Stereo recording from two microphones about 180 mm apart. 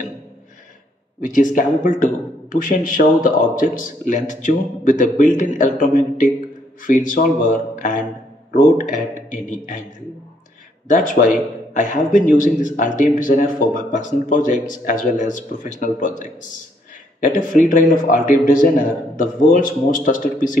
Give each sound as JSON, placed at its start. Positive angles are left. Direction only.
{"t": 1.2, "sound": "speech", "side_deg": 45}
{"t": 10.9, "sound": "speech", "side_deg": 45}